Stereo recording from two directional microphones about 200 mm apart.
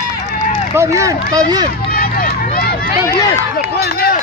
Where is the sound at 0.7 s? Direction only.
15° right (ahead or behind).